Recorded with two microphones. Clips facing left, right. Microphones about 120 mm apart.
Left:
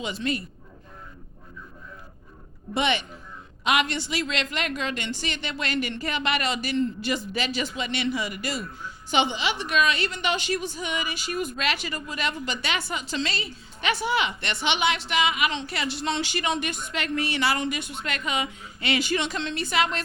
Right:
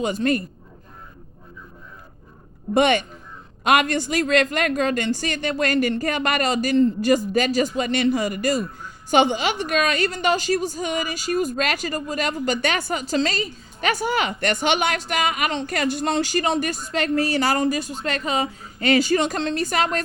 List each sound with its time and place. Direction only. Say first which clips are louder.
0.0 s a woman's voice: right 7 dB; 45° right (ahead or behind)
2.7 s a woman's voice: right 7 dB; 45° right (ahead or behind)